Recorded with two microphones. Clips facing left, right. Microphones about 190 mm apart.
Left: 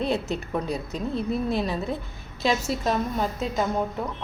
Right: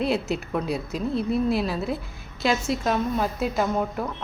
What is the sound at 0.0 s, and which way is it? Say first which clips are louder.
A woman's voice: right 2 dB; 5° right (ahead or behind).